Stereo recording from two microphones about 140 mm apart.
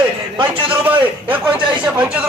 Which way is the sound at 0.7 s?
10° right (ahead or behind).